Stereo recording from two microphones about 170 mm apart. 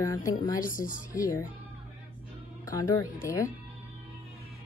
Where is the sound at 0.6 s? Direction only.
55° left (ahead or behind).